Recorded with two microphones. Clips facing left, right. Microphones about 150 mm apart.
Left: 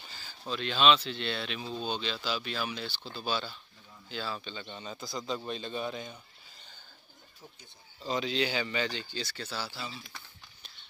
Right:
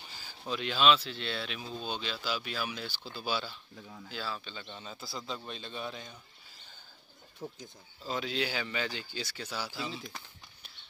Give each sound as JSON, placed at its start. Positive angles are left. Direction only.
{"t": 0.1, "sound": "a man's voice", "side_deg": -10}
{"t": 7.4, "sound": "speech", "side_deg": -45}
{"t": 8.0, "sound": "a man's voice", "side_deg": 0}